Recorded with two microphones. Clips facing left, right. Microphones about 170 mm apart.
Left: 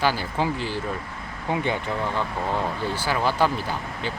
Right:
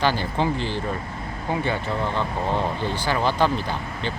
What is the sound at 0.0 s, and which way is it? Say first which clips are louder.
Speech: right 1 dB; 10° left (ahead or behind).